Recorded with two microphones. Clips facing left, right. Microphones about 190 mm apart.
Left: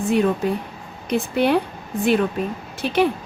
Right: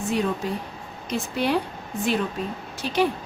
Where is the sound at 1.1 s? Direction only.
60° left (ahead or behind).